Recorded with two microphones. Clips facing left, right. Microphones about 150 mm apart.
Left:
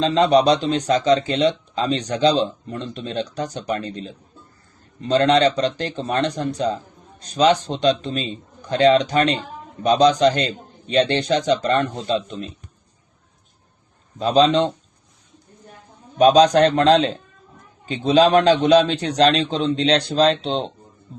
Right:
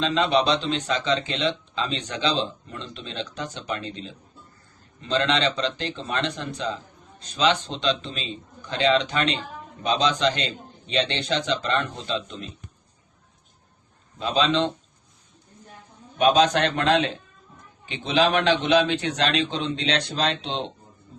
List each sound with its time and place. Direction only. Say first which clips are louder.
0.0 s speech: left 6 dB; 35° left (ahead or behind)
14.2 s speech: left 6 dB; 40° left (ahead or behind)
16.1 s a man's voice: left 6 dB; 35° left (ahead or behind)